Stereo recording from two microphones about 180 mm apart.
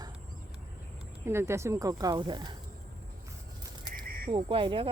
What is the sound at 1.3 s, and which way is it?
Speech, 15° right (ahead or behind).